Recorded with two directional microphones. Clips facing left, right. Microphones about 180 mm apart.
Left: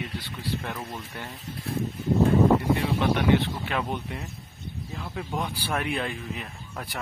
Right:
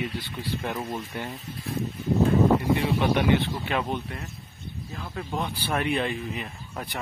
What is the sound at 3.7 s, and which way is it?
Speech, centre (ahead or behind).